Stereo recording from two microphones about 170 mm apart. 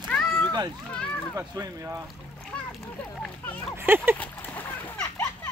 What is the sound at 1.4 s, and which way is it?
Speech, 20° right (ahead or behind).